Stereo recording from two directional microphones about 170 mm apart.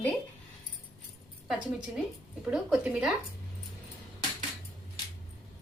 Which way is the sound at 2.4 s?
5° right (ahead or behind).